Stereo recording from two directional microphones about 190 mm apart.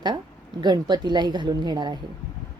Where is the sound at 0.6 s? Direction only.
20° right (ahead or behind).